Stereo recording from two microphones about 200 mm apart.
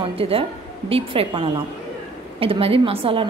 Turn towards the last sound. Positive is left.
turn(degrees=-30)  # may be behind; listen again after turning